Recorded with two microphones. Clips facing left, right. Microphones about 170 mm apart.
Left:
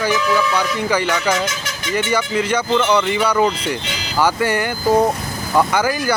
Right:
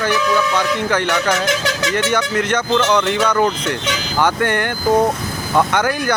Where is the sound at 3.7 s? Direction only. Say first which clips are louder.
Right 2 dB; 85° right.